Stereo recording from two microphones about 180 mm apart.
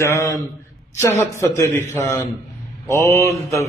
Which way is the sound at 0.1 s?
15° left (ahead or behind).